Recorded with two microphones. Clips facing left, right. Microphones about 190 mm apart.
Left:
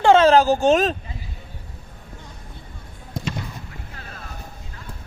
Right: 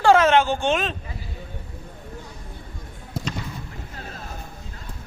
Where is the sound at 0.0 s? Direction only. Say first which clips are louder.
Left 3 dB; 25° left (ahead or behind).